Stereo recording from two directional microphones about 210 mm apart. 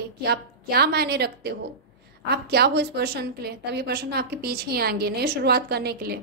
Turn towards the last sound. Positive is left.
turn(degrees=-50)  # may be behind; listen again after turning